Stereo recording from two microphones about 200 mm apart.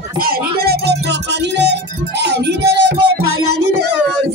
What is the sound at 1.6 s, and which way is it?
Music, 60° right (ahead or behind).